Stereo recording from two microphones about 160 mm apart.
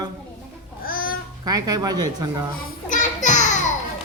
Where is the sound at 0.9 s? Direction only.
65° left (ahead or behind).